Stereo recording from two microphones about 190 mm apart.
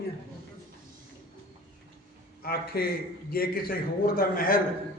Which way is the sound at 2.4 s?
50° left (ahead or behind).